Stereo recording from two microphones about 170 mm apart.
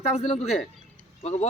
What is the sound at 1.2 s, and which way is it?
Speech, 40° left (ahead or behind).